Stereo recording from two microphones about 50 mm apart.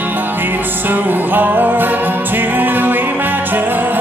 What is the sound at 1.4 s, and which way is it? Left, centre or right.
Music, right.